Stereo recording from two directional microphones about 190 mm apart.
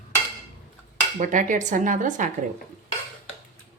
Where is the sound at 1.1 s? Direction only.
45° right (ahead or behind).